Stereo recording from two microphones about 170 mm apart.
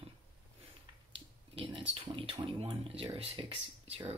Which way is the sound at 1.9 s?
30° right (ahead or behind).